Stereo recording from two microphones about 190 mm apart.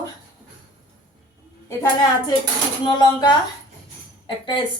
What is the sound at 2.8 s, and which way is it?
Speech, 20° left (ahead or behind).